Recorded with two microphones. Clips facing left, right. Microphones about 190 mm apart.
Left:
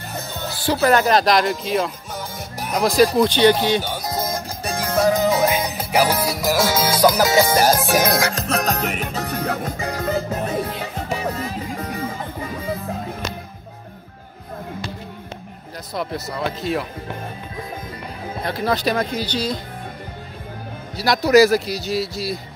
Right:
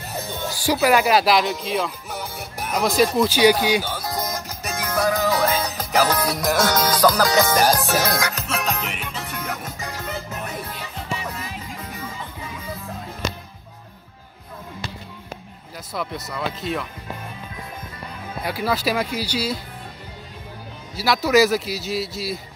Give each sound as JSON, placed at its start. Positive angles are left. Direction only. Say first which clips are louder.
{"t": 0.5, "sound": "speech", "louder": "left 1 dB", "side_deg": -15}
{"t": 3.8, "sound": "music", "louder": "left 2 dB", "side_deg": 20}
{"t": 8.1, "sound": "music", "louder": "left 4 dB", "side_deg": 30}
{"t": 10.8, "sound": "music", "louder": "left 5 dB", "side_deg": 45}
{"t": 18.4, "sound": "speech", "louder": "left 2 dB", "side_deg": -10}
{"t": 20.9, "sound": "speech", "louder": "left 3 dB", "side_deg": -5}